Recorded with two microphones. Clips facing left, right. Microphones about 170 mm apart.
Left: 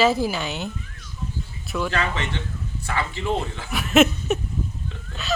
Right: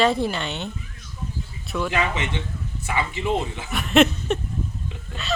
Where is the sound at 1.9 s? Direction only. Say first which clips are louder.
Right 1 dB; 15° right (ahead or behind).